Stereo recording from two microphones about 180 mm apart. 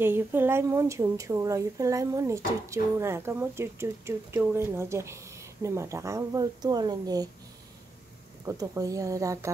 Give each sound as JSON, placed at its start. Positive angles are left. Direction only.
{"t": 0.0, "sound": "a woman's voice", "side_deg": -10}
{"t": 8.5, "sound": "speech", "side_deg": -20}